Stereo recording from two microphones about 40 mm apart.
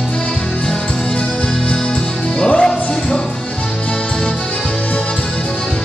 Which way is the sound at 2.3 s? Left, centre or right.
Left.